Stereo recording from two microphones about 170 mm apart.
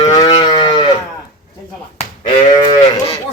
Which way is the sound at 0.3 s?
25° left (ahead or behind).